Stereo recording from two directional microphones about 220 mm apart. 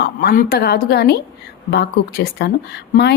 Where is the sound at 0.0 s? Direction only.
45° left (ahead or behind).